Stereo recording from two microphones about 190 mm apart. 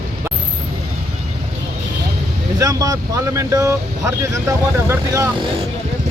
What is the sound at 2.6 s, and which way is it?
Speech, 15° right (ahead or behind).